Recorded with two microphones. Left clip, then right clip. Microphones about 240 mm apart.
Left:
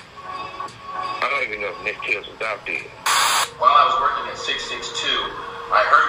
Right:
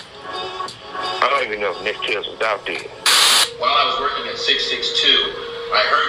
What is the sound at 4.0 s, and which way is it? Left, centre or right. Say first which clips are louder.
Television: left 1 dB; right.